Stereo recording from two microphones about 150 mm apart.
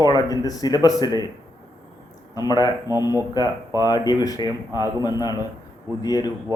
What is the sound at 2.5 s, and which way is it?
Speech, 25° left (ahead or behind).